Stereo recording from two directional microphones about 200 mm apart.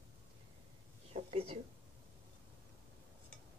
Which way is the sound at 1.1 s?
30° right (ahead or behind).